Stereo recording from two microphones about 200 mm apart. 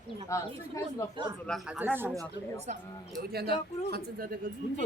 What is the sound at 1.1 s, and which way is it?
Speech, 20° right (ahead or behind).